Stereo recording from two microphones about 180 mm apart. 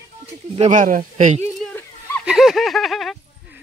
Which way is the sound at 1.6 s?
10° left (ahead or behind).